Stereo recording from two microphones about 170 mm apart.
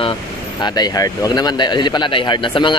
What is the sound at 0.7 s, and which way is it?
Speech, 20° left (ahead or behind).